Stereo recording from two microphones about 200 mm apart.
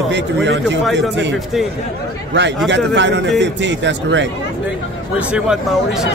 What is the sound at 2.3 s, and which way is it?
A man's voice, 60° right (ahead or behind).